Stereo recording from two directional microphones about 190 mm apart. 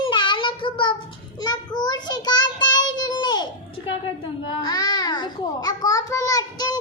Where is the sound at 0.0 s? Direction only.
25° left (ahead or behind).